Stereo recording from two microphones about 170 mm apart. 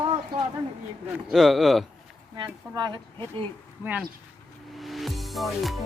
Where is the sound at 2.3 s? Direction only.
25° right (ahead or behind).